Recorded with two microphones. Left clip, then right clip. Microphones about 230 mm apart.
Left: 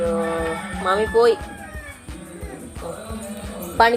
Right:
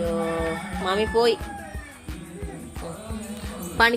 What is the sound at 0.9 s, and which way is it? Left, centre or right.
Speech, right.